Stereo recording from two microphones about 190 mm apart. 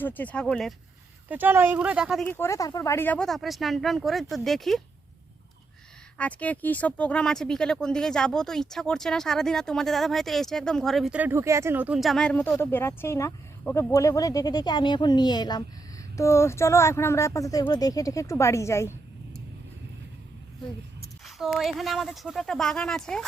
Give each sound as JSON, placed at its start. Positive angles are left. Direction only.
{"t": 0.0, "sound": "speech", "side_deg": 10}
{"t": 1.3, "sound": "speech", "side_deg": -10}
{"t": 2.2, "sound": "speech", "side_deg": 10}
{"t": 6.1, "sound": "speech", "side_deg": 5}
{"t": 21.2, "sound": "speech", "side_deg": 0}